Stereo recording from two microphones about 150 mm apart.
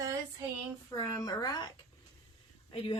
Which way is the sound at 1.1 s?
25° left (ahead or behind).